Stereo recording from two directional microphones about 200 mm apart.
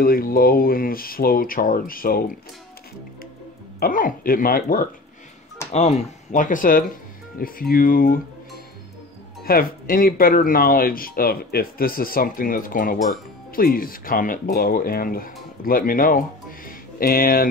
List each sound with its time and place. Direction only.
0.0 s speech: 45° left (ahead or behind)
3.8 s speech: 45° left (ahead or behind)
5.7 s speech: 35° left (ahead or behind)
9.4 s speech: 45° left (ahead or behind)